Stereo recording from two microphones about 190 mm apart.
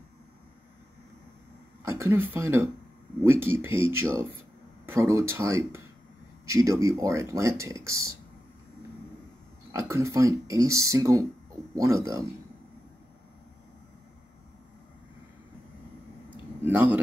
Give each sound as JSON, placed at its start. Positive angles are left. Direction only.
{"t": 1.8, "sound": "speech", "side_deg": -15}
{"t": 4.8, "sound": "speech", "side_deg": -15}
{"t": 9.7, "sound": "speech", "side_deg": -15}
{"t": 16.6, "sound": "speech", "side_deg": -10}